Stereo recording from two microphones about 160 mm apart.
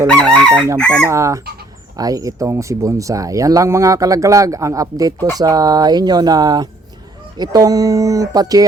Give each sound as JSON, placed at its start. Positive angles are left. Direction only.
{"t": 0.3, "sound": "chicken", "side_deg": 5}
{"t": 1.0, "sound": "speech", "side_deg": -20}